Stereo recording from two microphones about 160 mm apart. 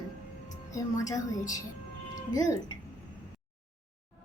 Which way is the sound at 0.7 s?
20° left (ahead or behind).